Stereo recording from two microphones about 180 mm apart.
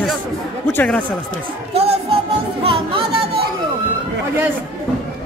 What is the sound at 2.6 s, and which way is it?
Music, 30° right (ahead or behind).